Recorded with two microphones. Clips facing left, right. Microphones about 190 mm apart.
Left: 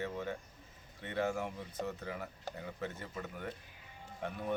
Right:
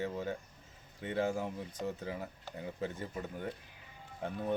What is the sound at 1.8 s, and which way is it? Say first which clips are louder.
Speech: right 1 dB; 45° left (ahead or behind).